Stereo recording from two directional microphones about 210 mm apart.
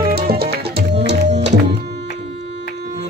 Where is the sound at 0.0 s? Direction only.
45° right (ahead or behind).